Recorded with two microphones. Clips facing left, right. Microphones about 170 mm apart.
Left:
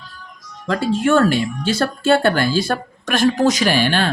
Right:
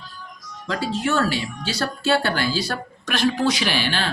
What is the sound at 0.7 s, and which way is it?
Speech, 55° left (ahead or behind).